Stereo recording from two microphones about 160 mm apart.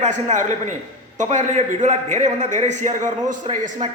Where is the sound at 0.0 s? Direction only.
50° right (ahead or behind).